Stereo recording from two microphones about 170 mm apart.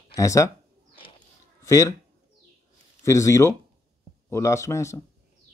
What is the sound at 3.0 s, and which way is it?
A man's voice, 15° left (ahead or behind).